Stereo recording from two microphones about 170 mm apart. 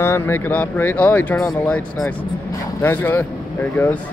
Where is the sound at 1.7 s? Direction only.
5° left (ahead or behind).